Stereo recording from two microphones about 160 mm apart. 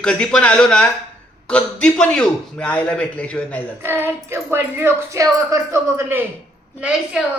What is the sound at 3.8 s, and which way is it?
A woman's voice, 15° right (ahead or behind).